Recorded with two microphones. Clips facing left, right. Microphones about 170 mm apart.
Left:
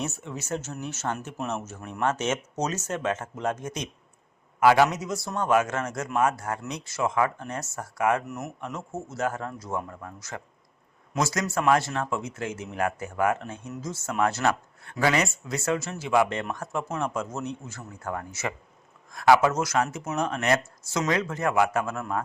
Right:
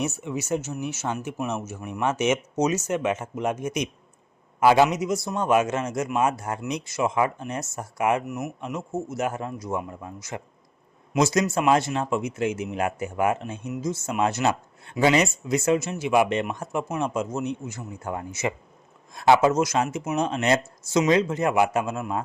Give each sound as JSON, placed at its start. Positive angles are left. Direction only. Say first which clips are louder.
{"t": 0.0, "sound": "speech", "louder": "right 5 dB", "side_deg": -10}
{"t": 8.3, "sound": "speech", "louder": "right 4 dB", "side_deg": -5}